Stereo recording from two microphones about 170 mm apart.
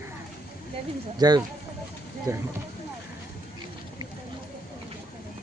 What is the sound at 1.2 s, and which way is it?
Speech, 25° right (ahead or behind).